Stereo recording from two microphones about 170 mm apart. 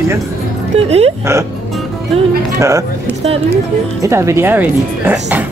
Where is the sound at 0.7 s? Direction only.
40° right (ahead or behind).